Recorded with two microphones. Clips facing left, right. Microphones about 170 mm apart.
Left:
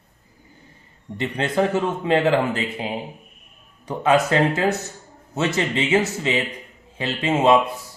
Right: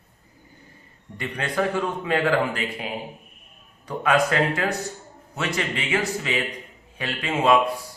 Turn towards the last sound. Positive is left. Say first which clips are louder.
# left 3 dB
turn(degrees=25)  # may be behind; listen again after turning